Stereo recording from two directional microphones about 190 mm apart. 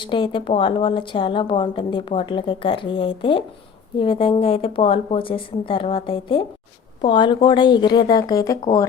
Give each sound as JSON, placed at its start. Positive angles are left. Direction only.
{"t": 0.0, "sound": "a woman's voice", "side_deg": 25}